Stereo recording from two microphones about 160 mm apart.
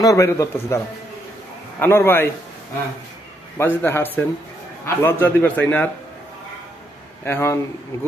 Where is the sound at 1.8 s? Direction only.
15° left (ahead or behind).